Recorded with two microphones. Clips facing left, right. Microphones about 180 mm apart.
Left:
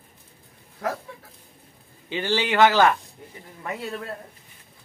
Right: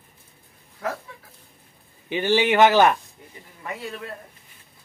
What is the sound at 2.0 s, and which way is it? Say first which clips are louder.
Speech: right 4 dB; 15° right (ahead or behind).